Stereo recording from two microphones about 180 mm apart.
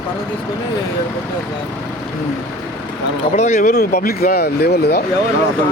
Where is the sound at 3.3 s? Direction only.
40° left (ahead or behind).